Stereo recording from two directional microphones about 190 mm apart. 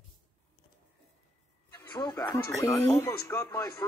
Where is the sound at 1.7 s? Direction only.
15° left (ahead or behind).